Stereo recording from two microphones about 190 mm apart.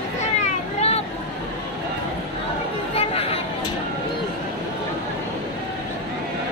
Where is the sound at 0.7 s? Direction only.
35° left (ahead or behind).